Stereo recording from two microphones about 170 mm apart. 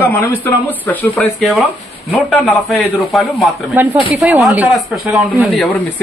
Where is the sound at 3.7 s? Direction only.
10° right (ahead or behind).